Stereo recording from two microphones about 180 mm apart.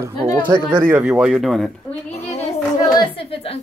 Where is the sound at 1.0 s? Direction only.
5° right (ahead or behind).